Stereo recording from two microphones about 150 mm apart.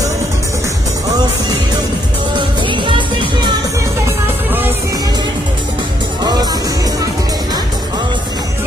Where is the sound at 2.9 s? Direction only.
30° right (ahead or behind).